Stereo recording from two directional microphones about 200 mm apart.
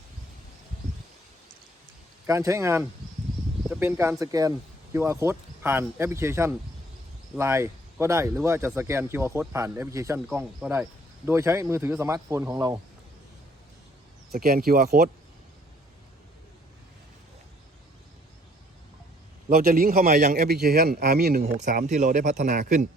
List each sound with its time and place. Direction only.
2.2 s speech: 15° right (ahead or behind)
14.3 s speech: 50° right (ahead or behind)
19.5 s speech: 45° right (ahead or behind)